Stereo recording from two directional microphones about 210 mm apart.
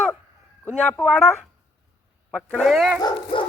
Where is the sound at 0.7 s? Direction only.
5° left (ahead or behind).